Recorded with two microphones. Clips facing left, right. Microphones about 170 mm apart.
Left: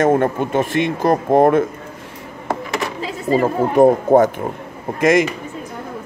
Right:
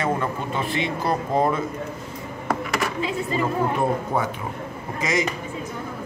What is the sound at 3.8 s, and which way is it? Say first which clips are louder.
Speech: left 12 dB; 45° left (ahead or behind).